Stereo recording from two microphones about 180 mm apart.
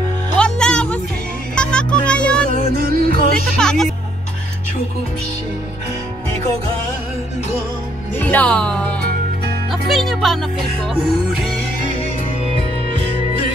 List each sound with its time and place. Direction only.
0.4 s music: 5° left (ahead or behind)
2.4 s music: 55° right (ahead or behind)
3.5 s speech: 5° left (ahead or behind)
8.2 s speech: 10° left (ahead or behind)